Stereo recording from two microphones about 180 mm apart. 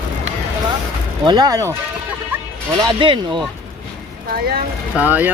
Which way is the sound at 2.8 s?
25° right (ahead or behind).